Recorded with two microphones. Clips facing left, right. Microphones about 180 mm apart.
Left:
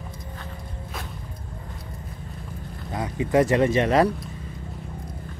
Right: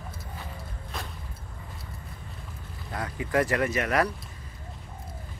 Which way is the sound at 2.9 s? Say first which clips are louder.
Left 6 dB; 20° left (ahead or behind).